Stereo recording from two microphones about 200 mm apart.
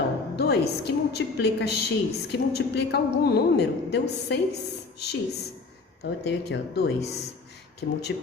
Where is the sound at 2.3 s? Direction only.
55° left (ahead or behind).